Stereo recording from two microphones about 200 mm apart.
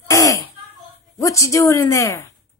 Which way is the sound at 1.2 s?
15° left (ahead or behind).